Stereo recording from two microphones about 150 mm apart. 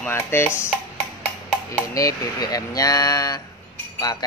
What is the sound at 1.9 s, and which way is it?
Speech, 25° left (ahead or behind).